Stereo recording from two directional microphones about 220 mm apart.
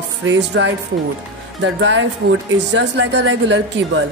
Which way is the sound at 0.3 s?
55° right (ahead or behind).